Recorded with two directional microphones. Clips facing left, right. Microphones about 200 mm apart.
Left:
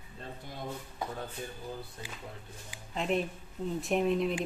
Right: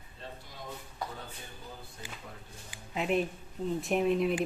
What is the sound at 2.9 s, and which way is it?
Speech, 5° right (ahead or behind).